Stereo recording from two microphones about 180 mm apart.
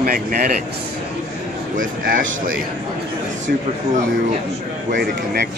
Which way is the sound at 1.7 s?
50° right (ahead or behind).